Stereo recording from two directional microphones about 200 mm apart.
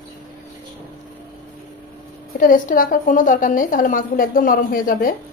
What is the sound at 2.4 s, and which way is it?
A woman's voice, 45° left (ahead or behind).